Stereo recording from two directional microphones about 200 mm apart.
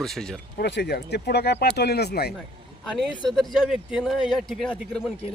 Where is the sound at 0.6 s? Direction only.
55° left (ahead or behind).